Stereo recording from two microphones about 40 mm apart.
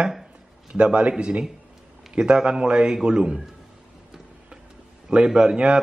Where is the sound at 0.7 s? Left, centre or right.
Right.